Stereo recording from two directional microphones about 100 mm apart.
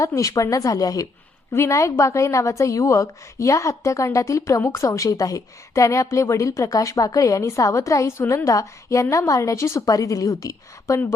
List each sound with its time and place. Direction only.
0.0 s a woman's voice: 35° left (ahead or behind)